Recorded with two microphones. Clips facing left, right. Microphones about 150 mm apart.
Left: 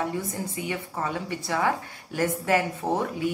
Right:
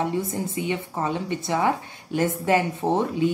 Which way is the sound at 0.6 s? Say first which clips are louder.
Right 4 dB; 20° right (ahead or behind).